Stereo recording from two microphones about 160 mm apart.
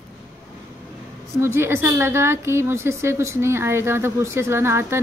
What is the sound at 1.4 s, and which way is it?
A woman's voice, 15° right (ahead or behind).